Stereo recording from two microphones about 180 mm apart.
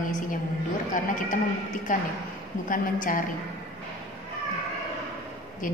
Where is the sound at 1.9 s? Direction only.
50° left (ahead or behind).